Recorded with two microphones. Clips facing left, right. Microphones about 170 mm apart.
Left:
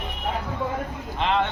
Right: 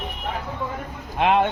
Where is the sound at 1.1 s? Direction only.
55° right (ahead or behind).